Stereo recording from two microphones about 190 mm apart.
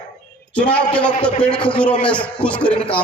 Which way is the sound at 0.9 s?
5° left (ahead or behind).